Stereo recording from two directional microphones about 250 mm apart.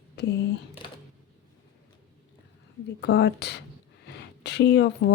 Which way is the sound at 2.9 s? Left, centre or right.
Left.